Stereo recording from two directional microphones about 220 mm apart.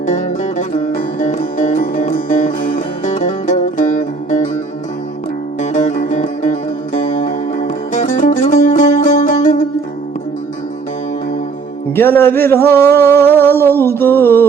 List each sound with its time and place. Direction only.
0.0 s music: 30° left (ahead or behind)
5.5 s music: 35° left (ahead or behind)
11.9 s a sound: 10° left (ahead or behind)